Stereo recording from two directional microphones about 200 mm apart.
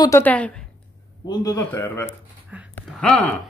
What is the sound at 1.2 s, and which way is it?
Speech, 20° left (ahead or behind).